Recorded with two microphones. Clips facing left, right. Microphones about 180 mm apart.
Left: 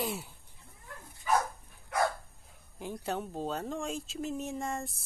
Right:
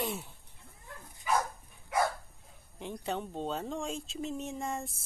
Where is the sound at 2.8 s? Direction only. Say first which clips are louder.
Left 1 dB; 5° left (ahead or behind).